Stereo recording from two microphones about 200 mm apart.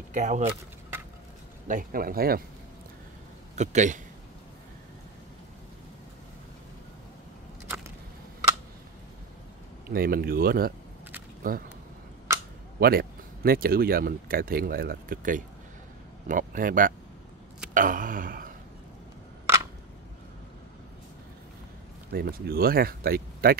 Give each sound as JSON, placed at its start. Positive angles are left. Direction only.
{"t": 0.1, "sound": "a man's voice", "side_deg": -35}
{"t": 1.7, "sound": "speech", "side_deg": -45}
{"t": 3.5, "sound": "a man's voice", "side_deg": -35}
{"t": 9.8, "sound": "speech", "side_deg": -45}
{"t": 12.7, "sound": "speech", "side_deg": -50}
{"t": 19.4, "sound": "a sound", "side_deg": -15}
{"t": 22.1, "sound": "speech", "side_deg": -50}